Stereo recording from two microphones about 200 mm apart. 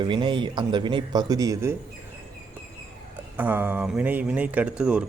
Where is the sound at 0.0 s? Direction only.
25° right (ahead or behind).